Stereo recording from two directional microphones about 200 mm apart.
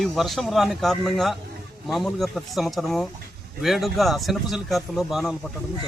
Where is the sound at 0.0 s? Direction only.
Centre (ahead or behind).